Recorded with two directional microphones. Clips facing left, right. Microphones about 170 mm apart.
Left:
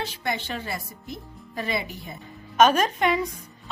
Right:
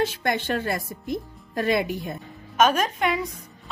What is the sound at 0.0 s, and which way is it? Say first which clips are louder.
Speech: right 5 dB; 50° right (ahead or behind).